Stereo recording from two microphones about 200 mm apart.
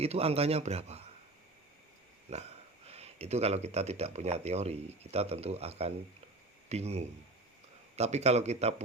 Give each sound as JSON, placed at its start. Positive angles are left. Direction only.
{"t": 0.0, "sound": "speech", "side_deg": -30}
{"t": 2.8, "sound": "speech", "side_deg": -30}